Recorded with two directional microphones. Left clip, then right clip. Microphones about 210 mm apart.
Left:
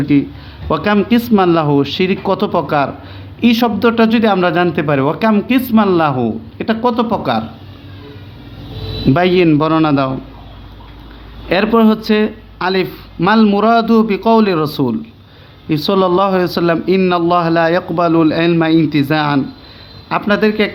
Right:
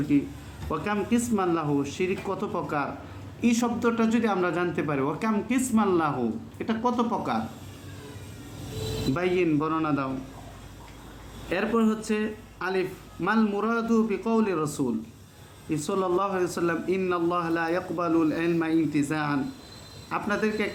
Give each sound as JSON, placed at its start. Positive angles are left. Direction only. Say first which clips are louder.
{"t": 0.1, "sound": "a man's voice", "louder": "left 12 dB", "side_deg": 45}
{"t": 9.1, "sound": "a man's voice", "louder": "left 14 dB", "side_deg": 45}
{"t": 11.4, "sound": "a man's voice", "louder": "left 14 dB", "side_deg": 45}